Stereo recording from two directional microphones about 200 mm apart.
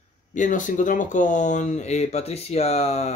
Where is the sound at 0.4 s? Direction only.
40° left (ahead or behind).